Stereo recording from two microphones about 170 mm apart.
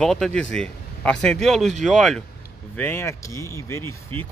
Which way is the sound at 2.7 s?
15° left (ahead or behind).